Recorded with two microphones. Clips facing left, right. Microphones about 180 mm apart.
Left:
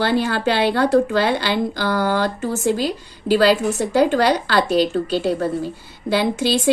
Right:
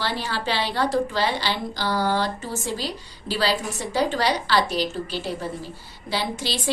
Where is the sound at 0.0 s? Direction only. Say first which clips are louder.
Left 9 dB; 55° left (ahead or behind).